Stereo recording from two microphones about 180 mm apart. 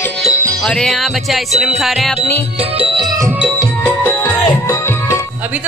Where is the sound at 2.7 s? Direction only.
30° right (ahead or behind).